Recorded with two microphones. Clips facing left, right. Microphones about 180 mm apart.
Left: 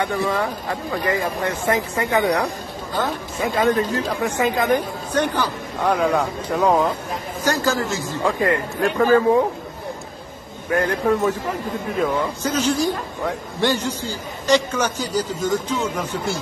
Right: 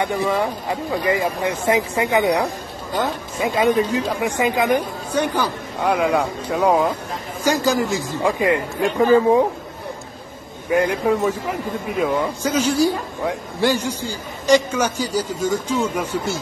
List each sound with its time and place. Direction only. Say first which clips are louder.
0.0 s speech: right 1 dB; 15° right (ahead or behind)
10.7 s speech: right 1 dB; 15° right (ahead or behind)